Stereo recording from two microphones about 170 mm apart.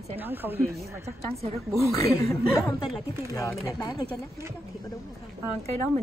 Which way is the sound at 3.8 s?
20° left (ahead or behind).